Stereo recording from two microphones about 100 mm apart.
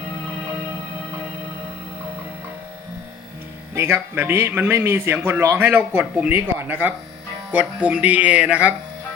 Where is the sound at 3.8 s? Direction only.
25° right (ahead or behind).